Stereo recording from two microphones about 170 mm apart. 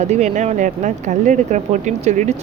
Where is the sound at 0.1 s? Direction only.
40° right (ahead or behind).